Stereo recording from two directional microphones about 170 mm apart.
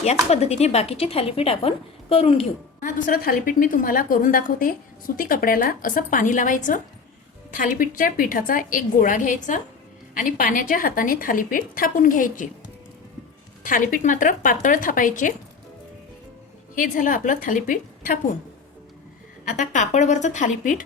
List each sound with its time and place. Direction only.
0.0 s speech: 40° left (ahead or behind)
2.8 s a woman's voice: 55° left (ahead or behind)
13.6 s a woman's voice: 50° left (ahead or behind)
16.7 s a woman's voice: 50° left (ahead or behind)
19.5 s a woman's voice: 45° left (ahead or behind)